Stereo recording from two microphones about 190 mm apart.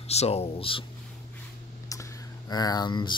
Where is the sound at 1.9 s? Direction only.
20° left (ahead or behind).